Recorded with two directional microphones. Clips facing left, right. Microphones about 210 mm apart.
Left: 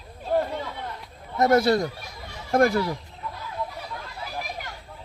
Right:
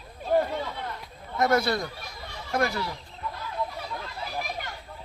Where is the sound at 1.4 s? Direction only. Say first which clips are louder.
Left 5 dB; 40° left (ahead or behind).